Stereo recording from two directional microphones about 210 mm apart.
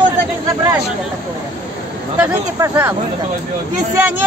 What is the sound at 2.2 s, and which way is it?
Speech, 10° right (ahead or behind).